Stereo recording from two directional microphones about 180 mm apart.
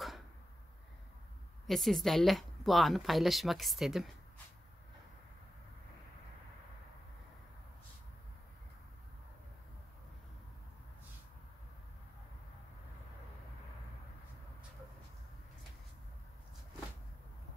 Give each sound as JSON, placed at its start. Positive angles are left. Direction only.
{"t": 1.7, "sound": "a woman's voice", "side_deg": 0}